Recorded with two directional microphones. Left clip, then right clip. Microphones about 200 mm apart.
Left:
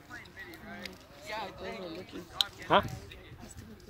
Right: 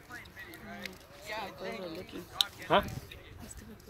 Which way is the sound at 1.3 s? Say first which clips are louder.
Even; 60° right (ahead or behind).